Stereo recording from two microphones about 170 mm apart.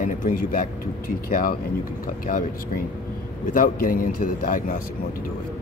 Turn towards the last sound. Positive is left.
turn(degrees=55)  # may be behind; listen again after turning